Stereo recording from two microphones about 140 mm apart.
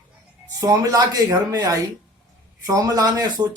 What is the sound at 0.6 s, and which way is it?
A man's voice, 25° right (ahead or behind).